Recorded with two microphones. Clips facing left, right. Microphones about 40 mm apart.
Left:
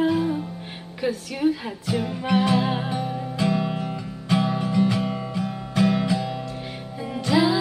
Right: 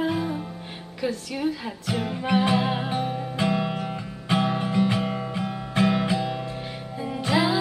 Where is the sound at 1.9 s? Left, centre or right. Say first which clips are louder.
Left 2 dB; centre.